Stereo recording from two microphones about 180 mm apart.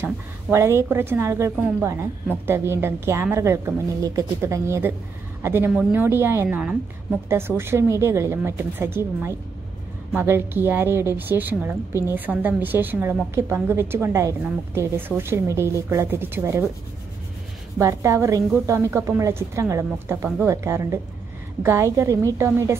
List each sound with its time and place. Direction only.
0.0 s a woman's voice: 15° right (ahead or behind)
17.7 s a woman's voice: 15° right (ahead or behind)